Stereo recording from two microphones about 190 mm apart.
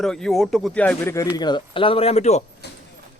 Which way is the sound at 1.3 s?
20° left (ahead or behind).